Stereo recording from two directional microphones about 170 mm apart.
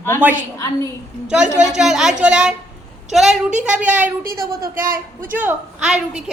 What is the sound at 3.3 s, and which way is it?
Speech, 45° right (ahead or behind).